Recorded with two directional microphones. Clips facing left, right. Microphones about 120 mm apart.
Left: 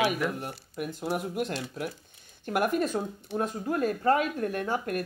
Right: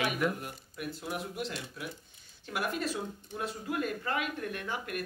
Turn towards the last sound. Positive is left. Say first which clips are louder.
# left 7 dB
turn(degrees=40)  # may be behind; listen again after turning